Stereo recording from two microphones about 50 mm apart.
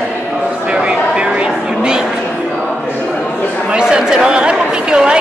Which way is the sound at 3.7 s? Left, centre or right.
Centre.